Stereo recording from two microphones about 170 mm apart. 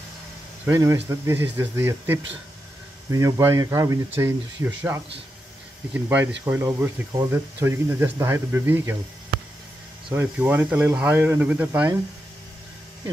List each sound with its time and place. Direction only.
0.7 s speech: 15° right (ahead or behind)
10.0 s speech: 10° right (ahead or behind)